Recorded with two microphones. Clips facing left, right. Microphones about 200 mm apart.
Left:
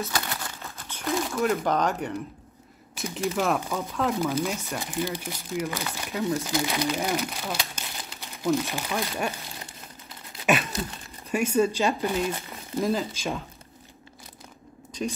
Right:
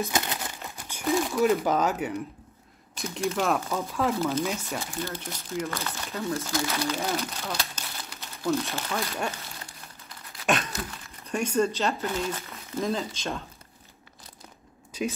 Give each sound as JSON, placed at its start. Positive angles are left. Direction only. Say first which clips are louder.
{"t": 0.0, "sound": "crumpling", "louder": "right 2 dB", "side_deg": -20}
{"t": 1.1, "sound": "speech", "louder": "right 2 dB", "side_deg": 0}
{"t": 4.2, "sound": "speech", "louder": "even", "side_deg": 15}
{"t": 10.4, "sound": "a sound", "louder": "left 2 dB", "side_deg": 5}
{"t": 11.3, "sound": "speech", "louder": "left 2 dB", "side_deg": 10}
{"t": 14.9, "sound": "a sound", "louder": "even", "side_deg": -5}